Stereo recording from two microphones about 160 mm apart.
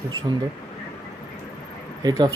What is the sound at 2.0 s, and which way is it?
Speech, 25° right (ahead or behind).